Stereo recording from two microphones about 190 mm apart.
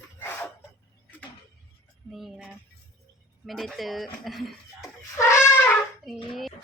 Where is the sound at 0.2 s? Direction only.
10° left (ahead or behind).